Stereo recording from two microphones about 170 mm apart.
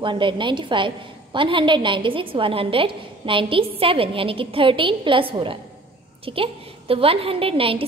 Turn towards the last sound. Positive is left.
turn(degrees=-30)  # may be behind; listen again after turning